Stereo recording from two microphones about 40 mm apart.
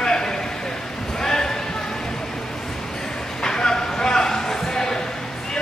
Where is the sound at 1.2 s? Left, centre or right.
Centre.